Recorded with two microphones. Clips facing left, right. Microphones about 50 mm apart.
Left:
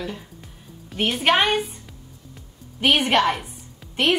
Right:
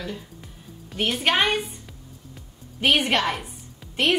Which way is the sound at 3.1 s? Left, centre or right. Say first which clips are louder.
Left 4 dB; centre.